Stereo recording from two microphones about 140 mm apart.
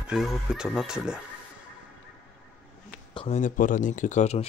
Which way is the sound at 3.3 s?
70° left (ahead or behind).